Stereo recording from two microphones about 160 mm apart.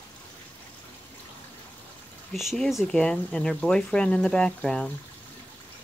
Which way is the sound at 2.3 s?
Centre (ahead or behind).